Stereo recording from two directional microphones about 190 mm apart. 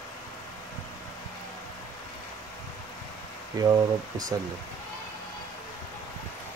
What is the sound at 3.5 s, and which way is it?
Speech, 20° right (ahead or behind).